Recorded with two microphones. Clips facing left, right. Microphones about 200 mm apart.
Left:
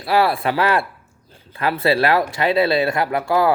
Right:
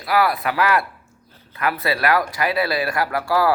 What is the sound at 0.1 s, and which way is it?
Speech, 30° left (ahead or behind).